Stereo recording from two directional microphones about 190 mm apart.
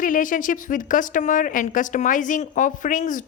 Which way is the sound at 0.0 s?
45° left (ahead or behind).